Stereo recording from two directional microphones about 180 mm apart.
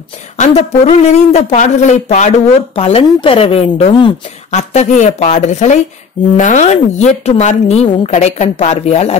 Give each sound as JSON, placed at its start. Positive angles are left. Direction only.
{"t": 0.4, "sound": "speech", "side_deg": 40}